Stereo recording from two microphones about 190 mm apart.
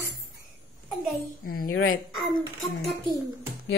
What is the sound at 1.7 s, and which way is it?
Speech, 90° left.